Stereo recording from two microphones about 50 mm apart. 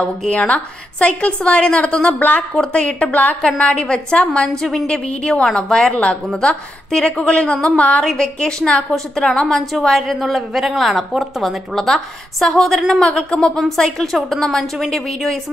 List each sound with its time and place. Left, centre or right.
0.3 s a woman's voice: left
2.5 s a woman's voice: centre
4.6 s a woman's voice: centre
4.8 s a woman's voice: centre
5.9 s a woman's voice: left
6.9 s a woman's voice: centre
9.6 s a woman's voice: centre
13.0 s a woman's voice: centre